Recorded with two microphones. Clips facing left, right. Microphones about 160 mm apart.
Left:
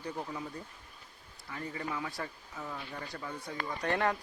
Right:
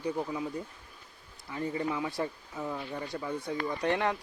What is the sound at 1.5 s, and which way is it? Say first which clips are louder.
Speech: right 6 dB; 20° right (ahead or behind).